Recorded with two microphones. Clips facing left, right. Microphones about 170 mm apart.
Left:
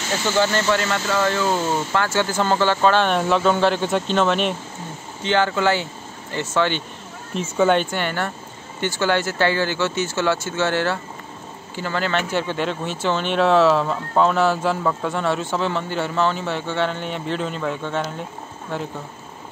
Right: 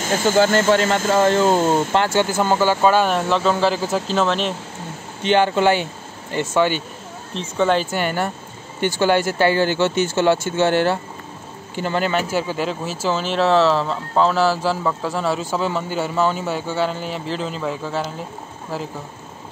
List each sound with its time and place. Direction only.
0.0 s speech: 50° right (ahead or behind)
2.0 s speech: 15° right (ahead or behind); by 4.6 s centre (ahead or behind)
5.2 s a man's voice: 15° right (ahead or behind)
7.3 s a man's voice: 5° left (ahead or behind)